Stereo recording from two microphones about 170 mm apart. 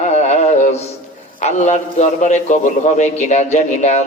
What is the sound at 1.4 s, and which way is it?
A man's voice, 45° left (ahead or behind).